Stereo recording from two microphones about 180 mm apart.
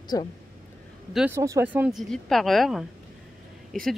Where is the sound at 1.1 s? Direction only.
5° right (ahead or behind).